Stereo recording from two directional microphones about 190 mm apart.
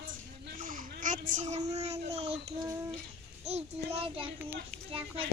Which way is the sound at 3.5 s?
35° right (ahead or behind).